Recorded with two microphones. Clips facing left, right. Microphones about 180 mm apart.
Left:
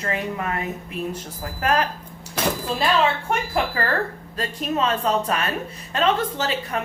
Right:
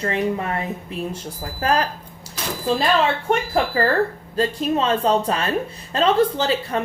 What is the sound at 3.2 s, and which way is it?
Speech, 35° right (ahead or behind).